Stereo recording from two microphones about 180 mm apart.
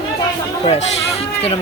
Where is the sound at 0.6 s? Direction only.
35° left (ahead or behind).